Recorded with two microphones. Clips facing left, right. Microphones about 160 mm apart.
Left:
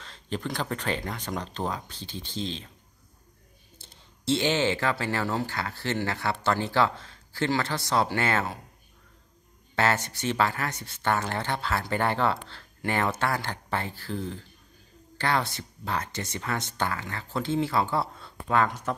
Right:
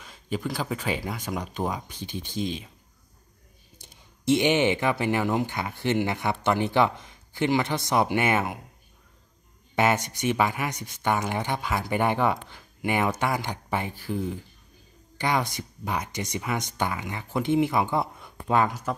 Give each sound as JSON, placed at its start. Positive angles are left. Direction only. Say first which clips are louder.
{"t": 0.0, "sound": "speech", "louder": "right 2 dB", "side_deg": -10}
{"t": 3.7, "sound": "speech", "louder": "right 1 dB", "side_deg": -15}
{"t": 9.8, "sound": "speech", "louder": "right 2 dB", "side_deg": -15}